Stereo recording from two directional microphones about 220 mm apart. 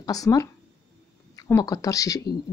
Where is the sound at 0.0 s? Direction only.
15° left (ahead or behind).